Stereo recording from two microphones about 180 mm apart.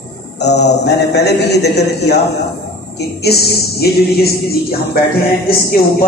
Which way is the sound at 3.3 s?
65° left (ahead or behind).